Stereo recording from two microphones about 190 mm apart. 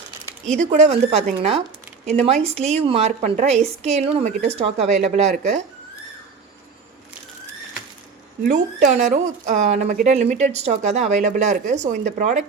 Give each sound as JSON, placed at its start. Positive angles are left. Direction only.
{"t": 0.6, "sound": "speech", "side_deg": -40}
{"t": 8.4, "sound": "speech", "side_deg": -40}